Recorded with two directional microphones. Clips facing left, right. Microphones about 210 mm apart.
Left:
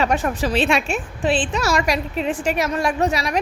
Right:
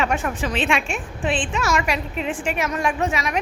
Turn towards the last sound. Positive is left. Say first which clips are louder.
# left 2 dB
turn(degrees=35)  # may be behind; listen again after turning